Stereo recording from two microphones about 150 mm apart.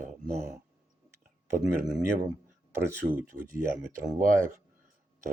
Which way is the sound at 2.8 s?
15° right (ahead or behind).